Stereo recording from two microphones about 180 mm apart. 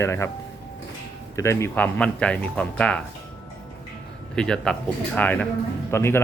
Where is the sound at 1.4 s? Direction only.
15° left (ahead or behind).